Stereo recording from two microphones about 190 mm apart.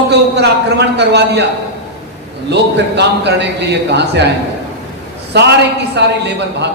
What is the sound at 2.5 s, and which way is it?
A man's voice, 65° right (ahead or behind).